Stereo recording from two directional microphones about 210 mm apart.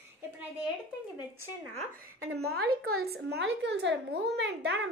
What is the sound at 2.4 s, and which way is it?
A woman's voice, 50° right (ahead or behind).